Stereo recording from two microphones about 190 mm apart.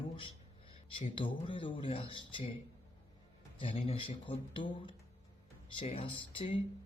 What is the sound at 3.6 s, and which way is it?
A man's voice, 30° left (ahead or behind).